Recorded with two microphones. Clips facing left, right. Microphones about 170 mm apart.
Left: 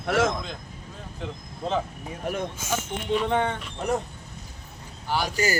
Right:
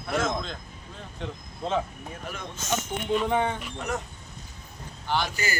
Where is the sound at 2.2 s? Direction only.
55° left (ahead or behind).